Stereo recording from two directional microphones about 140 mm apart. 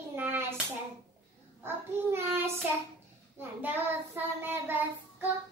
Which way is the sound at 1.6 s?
15° right (ahead or behind).